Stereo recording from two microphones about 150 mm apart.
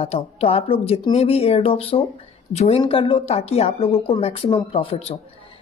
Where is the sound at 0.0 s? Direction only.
40° left (ahead or behind).